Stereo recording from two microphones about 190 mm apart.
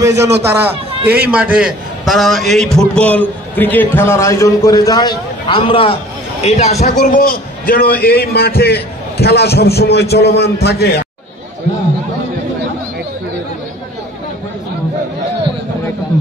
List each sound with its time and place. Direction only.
0.2 s a man's voice: 10° right (ahead or behind); by 11.1 s 55° left (ahead or behind)